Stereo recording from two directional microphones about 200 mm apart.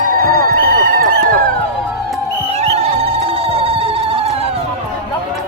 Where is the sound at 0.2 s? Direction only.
45° right (ahead or behind).